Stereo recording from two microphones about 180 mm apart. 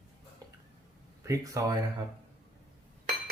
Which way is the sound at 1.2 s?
15° right (ahead or behind).